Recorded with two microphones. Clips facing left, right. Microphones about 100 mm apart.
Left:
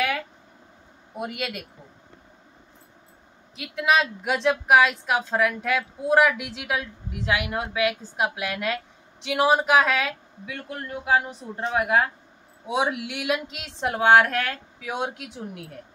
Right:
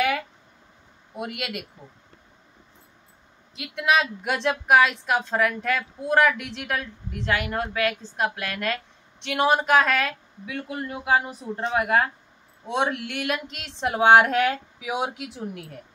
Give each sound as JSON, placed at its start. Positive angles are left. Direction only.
{"t": 1.1, "sound": "a woman's voice", "side_deg": 0}
{"t": 3.5, "sound": "a woman's voice", "side_deg": 0}
{"t": 13.9, "sound": "a woman's voice", "side_deg": -20}